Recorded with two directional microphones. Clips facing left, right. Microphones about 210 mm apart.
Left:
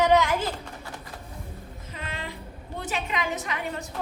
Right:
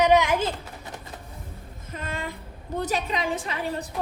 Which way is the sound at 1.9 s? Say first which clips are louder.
Right 4 dB; 45° right (ahead or behind).